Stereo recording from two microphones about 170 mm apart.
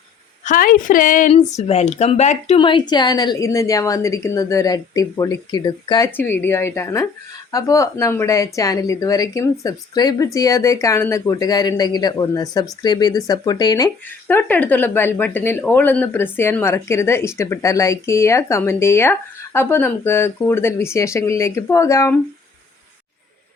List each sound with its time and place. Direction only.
0.4 s a woman's voice: 55° left (ahead or behind)
2.6 s a woman's voice: 30° left (ahead or behind)
6.1 s a woman's voice: 10° left (ahead or behind)
14.3 s speech: 10° left (ahead or behind)